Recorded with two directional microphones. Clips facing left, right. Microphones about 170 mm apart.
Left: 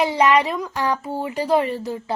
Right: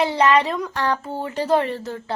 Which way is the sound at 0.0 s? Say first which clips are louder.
Even; 15° left (ahead or behind).